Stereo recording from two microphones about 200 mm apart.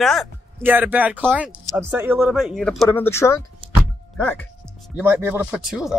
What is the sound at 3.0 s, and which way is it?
Speech, 15° left (ahead or behind).